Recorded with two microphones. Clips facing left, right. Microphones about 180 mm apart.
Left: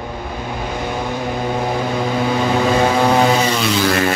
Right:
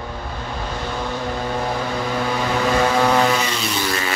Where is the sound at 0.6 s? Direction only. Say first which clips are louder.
Left 3 dB; 15° left (ahead or behind).